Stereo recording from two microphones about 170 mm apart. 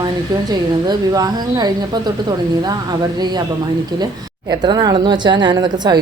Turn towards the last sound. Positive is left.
turn(degrees=-25)  # may be behind; listen again after turning